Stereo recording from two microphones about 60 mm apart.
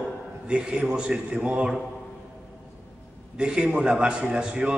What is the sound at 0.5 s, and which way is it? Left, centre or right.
A man's voice, centre.